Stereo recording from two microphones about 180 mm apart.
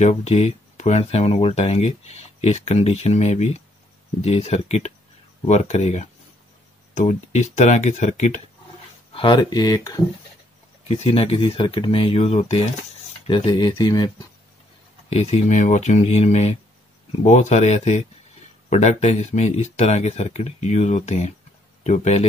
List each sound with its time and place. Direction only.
0.0 s speech: 35° left (ahead or behind)
9.1 s speech: 25° left (ahead or behind)
10.9 s speech: 35° left (ahead or behind)
15.0 s speech: 35° left (ahead or behind)